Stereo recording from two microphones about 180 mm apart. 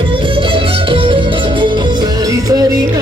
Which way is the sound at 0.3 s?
30° right (ahead or behind).